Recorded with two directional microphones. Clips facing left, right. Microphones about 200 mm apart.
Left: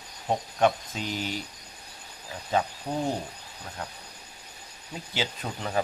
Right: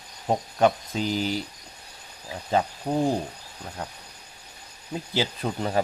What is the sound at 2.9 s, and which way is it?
Cricket, 25° right (ahead or behind).